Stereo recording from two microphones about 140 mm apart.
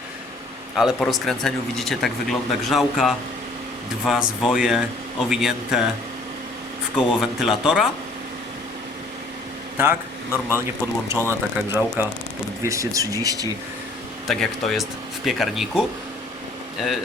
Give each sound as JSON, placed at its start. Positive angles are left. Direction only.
{"t": 0.8, "sound": "speech", "side_deg": 0}
{"t": 6.9, "sound": "speech", "side_deg": 0}
{"t": 9.7, "sound": "a man's voice", "side_deg": -15}
{"t": 14.3, "sound": "speech", "side_deg": 0}